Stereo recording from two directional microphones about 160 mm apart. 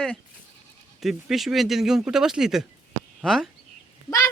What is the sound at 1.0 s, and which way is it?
Speech, centre (ahead or behind).